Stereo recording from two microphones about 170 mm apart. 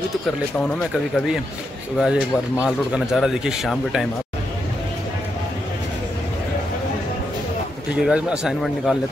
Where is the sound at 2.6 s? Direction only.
5° right (ahead or behind).